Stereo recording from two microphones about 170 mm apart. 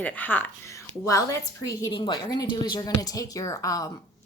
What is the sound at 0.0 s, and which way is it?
A woman's voice, 10° left (ahead or behind).